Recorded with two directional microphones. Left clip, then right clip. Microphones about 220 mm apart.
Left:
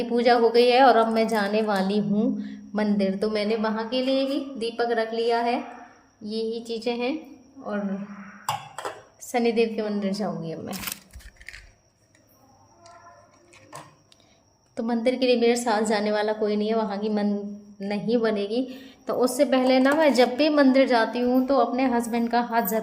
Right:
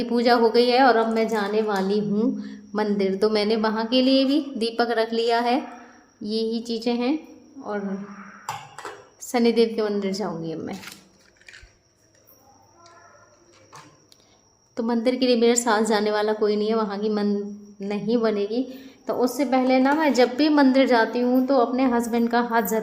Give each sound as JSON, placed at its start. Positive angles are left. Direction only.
{"t": 0.0, "sound": "a woman's voice", "side_deg": -5}
{"t": 9.2, "sound": "a woman's voice", "side_deg": -15}
{"t": 14.8, "sound": "a woman's voice", "side_deg": -10}